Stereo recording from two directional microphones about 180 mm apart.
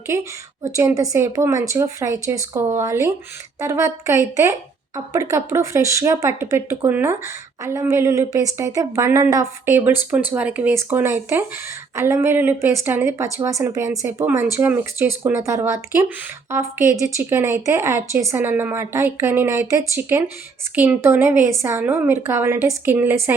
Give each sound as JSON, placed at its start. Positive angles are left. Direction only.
{"t": 0.1, "sound": "speech", "side_deg": -15}